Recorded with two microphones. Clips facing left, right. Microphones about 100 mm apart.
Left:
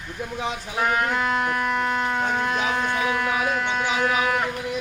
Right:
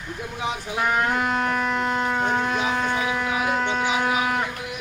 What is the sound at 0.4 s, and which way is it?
Speech, 10° right (ahead or behind).